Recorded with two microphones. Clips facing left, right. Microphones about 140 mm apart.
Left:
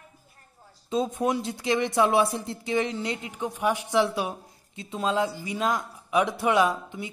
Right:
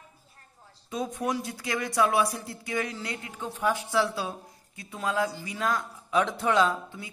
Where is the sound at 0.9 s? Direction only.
25° left (ahead or behind).